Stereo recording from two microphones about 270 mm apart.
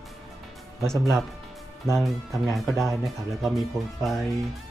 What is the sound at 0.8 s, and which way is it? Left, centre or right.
Speech, centre.